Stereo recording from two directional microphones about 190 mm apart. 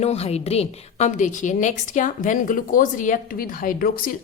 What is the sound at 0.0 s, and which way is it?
A woman's voice, 35° left (ahead or behind).